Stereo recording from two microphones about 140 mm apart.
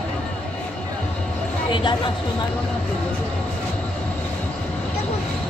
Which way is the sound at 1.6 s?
35° left (ahead or behind).